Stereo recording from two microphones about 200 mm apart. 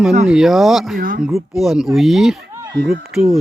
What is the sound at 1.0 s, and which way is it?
Speech, 45° right (ahead or behind).